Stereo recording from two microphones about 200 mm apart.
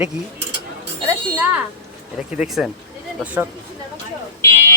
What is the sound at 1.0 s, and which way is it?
Speech, 5° right (ahead or behind).